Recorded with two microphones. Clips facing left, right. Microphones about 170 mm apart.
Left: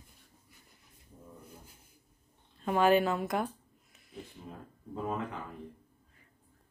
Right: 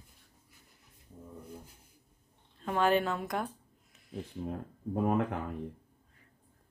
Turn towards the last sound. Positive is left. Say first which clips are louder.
# right 6 dB
turn(degrees=-65)  # may be behind; listen again after turning